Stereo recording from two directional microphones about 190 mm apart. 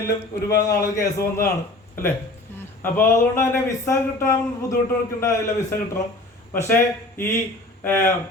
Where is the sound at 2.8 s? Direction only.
10° left (ahead or behind).